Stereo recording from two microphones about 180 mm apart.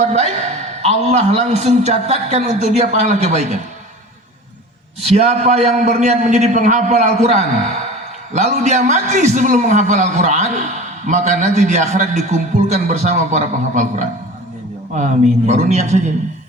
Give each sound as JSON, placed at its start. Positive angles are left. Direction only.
{"t": 0.0, "sound": "a man's voice", "side_deg": -40}
{"t": 5.1, "sound": "a man's voice", "side_deg": -35}